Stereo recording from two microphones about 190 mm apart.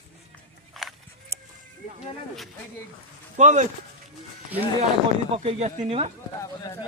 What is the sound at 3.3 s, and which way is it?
Speech, 40° right (ahead or behind).